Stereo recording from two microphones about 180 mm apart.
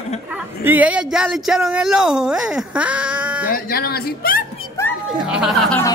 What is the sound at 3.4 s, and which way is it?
Speech, 55° left (ahead or behind).